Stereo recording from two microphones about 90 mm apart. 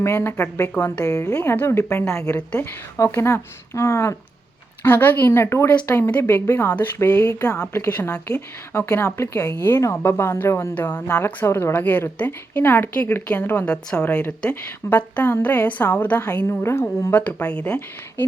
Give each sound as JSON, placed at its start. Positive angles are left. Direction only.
{"t": 0.0, "sound": "a woman's voice", "side_deg": 30}
{"t": 1.0, "sound": "a woman's voice", "side_deg": 40}
{"t": 4.8, "sound": "a woman's voice", "side_deg": 20}
{"t": 5.3, "sound": "a woman's voice", "side_deg": 30}
{"t": 7.2, "sound": "speech", "side_deg": 35}
{"t": 7.6, "sound": "a woman's voice", "side_deg": 25}
{"t": 11.3, "sound": "a woman's voice", "side_deg": 25}